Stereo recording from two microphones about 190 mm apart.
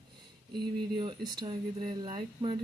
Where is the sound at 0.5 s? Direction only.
25° right (ahead or behind).